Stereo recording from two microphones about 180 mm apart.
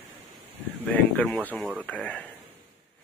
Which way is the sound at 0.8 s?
10° left (ahead or behind).